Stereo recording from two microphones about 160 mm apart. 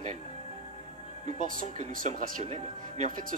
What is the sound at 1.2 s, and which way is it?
Speech, 55° right (ahead or behind).